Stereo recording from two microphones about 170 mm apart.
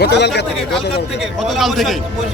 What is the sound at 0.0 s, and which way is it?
Speech, 80° left.